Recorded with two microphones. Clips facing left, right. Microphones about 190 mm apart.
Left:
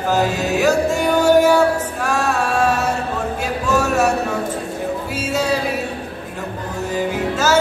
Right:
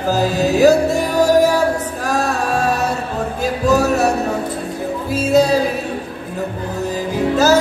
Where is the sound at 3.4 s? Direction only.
35° right (ahead or behind).